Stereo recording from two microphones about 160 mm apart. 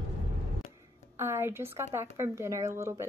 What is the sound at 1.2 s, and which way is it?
Speech, 15° right (ahead or behind).